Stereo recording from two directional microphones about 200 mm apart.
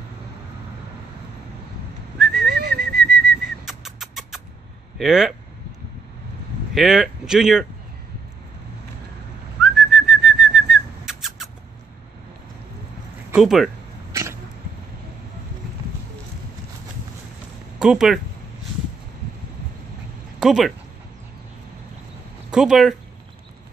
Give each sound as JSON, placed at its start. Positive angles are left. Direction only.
{"t": 2.1, "sound": "whistling", "side_deg": 0}
{"t": 2.4, "sound": "whistling", "side_deg": -55}
{"t": 3.3, "sound": "whistling", "side_deg": 0}
{"t": 4.9, "sound": "speech", "side_deg": 0}
{"t": 6.7, "sound": "speech", "side_deg": 0}
{"t": 9.6, "sound": "whistling", "side_deg": 0}
{"t": 13.3, "sound": "speech", "side_deg": 0}
{"t": 14.1, "sound": "cat", "side_deg": -15}
{"t": 17.7, "sound": "speech", "side_deg": -5}
{"t": 20.3, "sound": "speech", "side_deg": 0}
{"t": 22.5, "sound": "speech", "side_deg": -5}